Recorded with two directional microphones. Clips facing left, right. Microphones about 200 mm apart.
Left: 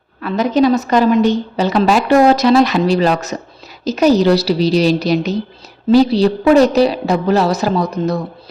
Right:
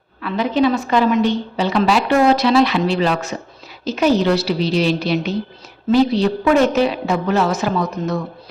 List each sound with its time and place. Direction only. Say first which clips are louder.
0.2 s a woman's voice: left 3 dB; 40° left (ahead or behind)